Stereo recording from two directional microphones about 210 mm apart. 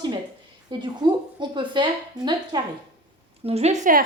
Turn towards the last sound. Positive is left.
turn(degrees=-35)  # may be behind; listen again after turning